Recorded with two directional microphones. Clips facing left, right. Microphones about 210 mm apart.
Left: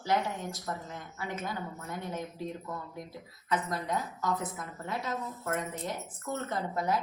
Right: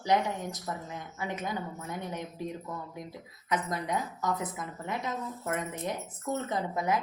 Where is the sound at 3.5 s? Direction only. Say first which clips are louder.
Right 1 dB; 15° right (ahead or behind).